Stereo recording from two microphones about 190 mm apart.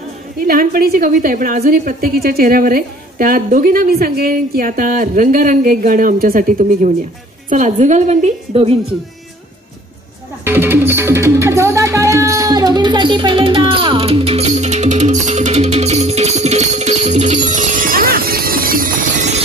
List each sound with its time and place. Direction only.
0.5 s a woman's voice: 50° right (ahead or behind)
7.4 s music: 40° right (ahead or behind)
10.4 s music: 10° right (ahead or behind); by 18.9 s 50° right (ahead or behind)